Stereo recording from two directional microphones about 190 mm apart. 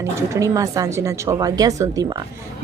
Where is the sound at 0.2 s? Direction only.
15° right (ahead or behind).